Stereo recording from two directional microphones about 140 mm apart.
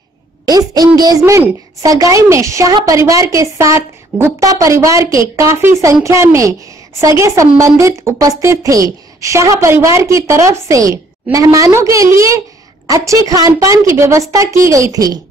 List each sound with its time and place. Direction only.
0.5 s a woman's voice: 30° right (ahead or behind)